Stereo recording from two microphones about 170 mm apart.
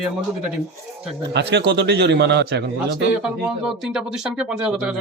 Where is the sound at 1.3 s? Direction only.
80° right.